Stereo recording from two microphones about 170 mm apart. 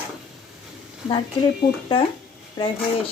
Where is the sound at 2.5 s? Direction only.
30° left (ahead or behind).